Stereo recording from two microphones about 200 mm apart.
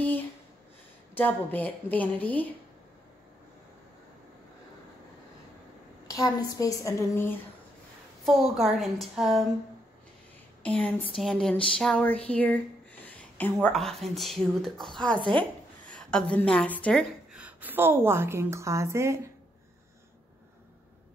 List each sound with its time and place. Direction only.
1.1 s speech: 10° left (ahead or behind)
6.0 s speech: 15° left (ahead or behind)
8.3 s a woman's voice: centre (ahead or behind)
10.6 s speech: 10° left (ahead or behind)
15.1 s speech: 25° right (ahead or behind)
15.9 s a woman's voice: 5° left (ahead or behind)
17.3 s a woman's voice: 5° right (ahead or behind)